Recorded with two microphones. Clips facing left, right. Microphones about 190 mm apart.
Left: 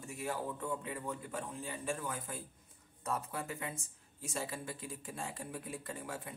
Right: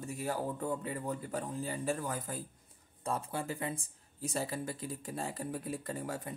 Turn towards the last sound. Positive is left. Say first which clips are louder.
# right 5 dB
turn(degrees=-40)  # may be behind; listen again after turning